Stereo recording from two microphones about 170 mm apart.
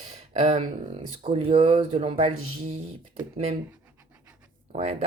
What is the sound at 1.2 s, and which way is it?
Speech, 35° right (ahead or behind).